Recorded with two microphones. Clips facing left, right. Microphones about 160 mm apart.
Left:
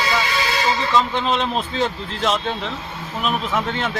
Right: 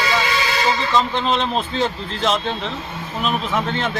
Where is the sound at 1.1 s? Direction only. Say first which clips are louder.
Right 1 dB; 5° left (ahead or behind).